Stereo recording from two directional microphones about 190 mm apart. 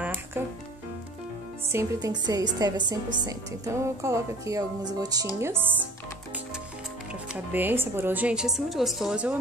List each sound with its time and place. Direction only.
0.0 s music: 10° right (ahead or behind)
1.7 s a woman's voice: 15° right (ahead or behind)
7.3 s a woman's voice: 10° right (ahead or behind)